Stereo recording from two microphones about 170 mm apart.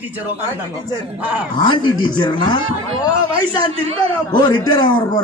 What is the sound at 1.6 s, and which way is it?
A man's voice, 25° left (ahead or behind).